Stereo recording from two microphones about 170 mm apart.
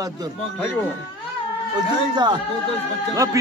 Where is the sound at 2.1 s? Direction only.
25° right (ahead or behind).